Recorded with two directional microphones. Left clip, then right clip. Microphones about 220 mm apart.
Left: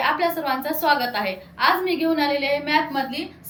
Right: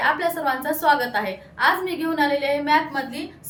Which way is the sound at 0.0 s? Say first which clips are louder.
Even; 20° right (ahead or behind).